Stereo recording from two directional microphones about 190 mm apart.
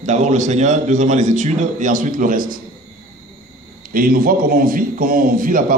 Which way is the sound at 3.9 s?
50° right (ahead or behind).